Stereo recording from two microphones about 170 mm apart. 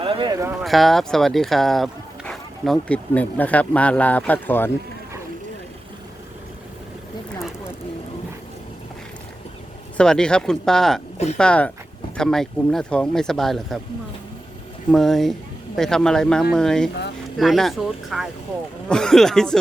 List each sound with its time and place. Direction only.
0.0 s a sound: 30° right (ahead or behind)
0.6 s speech: centre (ahead or behind)
10.0 s speech: 5° left (ahead or behind)
14.8 s speech: centre (ahead or behind)